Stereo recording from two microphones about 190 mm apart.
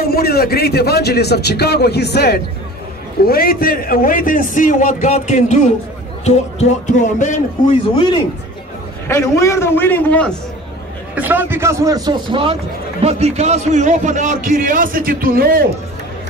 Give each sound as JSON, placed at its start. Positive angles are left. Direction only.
{"t": 0.1, "sound": "a man's voice", "side_deg": 55}
{"t": 9.0, "sound": "a man's voice", "side_deg": 15}
{"t": 11.1, "sound": "a man's voice", "side_deg": -10}